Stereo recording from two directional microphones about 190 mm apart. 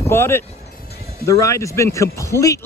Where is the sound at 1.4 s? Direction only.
15° left (ahead or behind).